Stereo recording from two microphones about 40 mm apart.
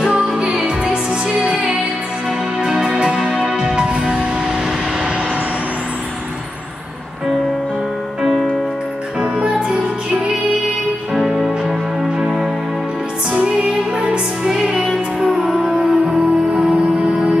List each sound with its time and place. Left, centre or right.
0.7 s music: right
9.2 s music: right
11.1 s music: centre
13.7 s music: right
17.1 s music: centre